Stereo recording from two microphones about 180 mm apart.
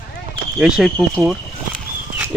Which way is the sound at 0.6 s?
Centre (ahead or behind).